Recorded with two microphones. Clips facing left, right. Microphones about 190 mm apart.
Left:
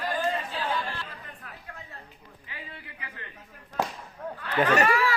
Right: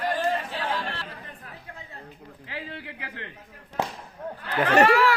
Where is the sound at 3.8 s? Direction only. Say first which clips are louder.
Even; 25° right (ahead or behind).